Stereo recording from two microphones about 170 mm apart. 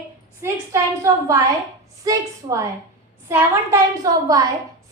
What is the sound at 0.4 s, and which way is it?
A woman's voice, 15° right (ahead or behind).